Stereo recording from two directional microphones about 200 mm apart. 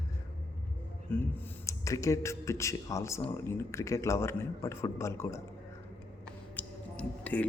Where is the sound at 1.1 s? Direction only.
10° left (ahead or behind).